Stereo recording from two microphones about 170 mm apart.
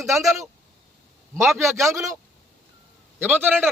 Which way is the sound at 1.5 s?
15° right (ahead or behind).